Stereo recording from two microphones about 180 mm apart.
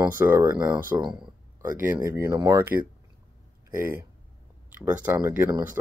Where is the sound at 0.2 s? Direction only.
10° right (ahead or behind).